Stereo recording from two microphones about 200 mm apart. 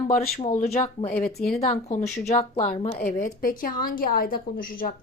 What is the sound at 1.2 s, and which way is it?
Speech, 50° left (ahead or behind).